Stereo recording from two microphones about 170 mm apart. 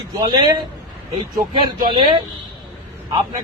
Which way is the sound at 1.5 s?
30° right (ahead or behind).